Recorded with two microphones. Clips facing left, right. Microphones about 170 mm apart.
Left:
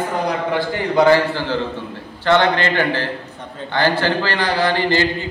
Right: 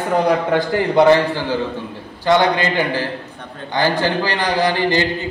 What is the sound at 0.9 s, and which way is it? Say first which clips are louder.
A man's voice: right 1 dB; 20° right (ahead or behind).